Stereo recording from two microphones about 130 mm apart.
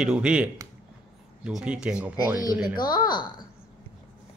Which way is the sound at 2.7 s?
35° left (ahead or behind).